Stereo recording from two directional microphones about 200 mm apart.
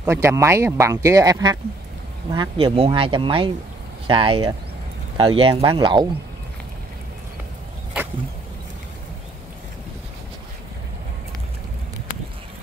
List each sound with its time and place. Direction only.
0.0 s speech: 10° right (ahead or behind)